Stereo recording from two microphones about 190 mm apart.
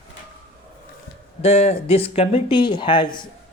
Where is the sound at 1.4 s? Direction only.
35° left (ahead or behind).